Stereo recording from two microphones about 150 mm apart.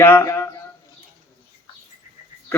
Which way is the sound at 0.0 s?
15° left (ahead or behind).